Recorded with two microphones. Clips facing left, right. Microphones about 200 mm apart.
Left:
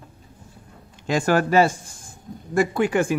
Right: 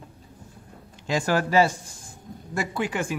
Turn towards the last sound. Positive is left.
turn(degrees=50)  # may be behind; listen again after turning